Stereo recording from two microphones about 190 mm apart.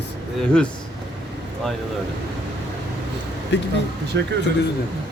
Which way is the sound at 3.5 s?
70° left (ahead or behind).